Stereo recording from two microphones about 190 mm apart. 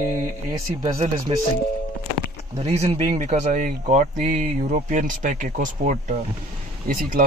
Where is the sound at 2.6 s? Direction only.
35° right (ahead or behind).